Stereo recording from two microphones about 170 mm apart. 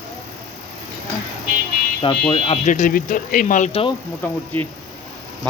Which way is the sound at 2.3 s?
30° left (ahead or behind).